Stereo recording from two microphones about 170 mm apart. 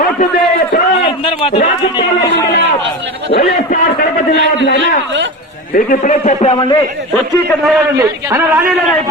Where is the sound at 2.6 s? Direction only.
90° right.